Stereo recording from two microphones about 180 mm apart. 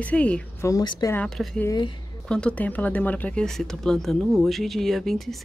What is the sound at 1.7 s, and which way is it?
Speech, 25° left (ahead or behind).